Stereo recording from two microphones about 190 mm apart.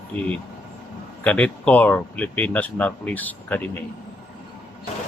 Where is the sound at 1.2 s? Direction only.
5° left (ahead or behind).